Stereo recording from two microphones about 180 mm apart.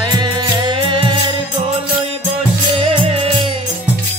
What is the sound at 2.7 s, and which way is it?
Music, 35° right (ahead or behind).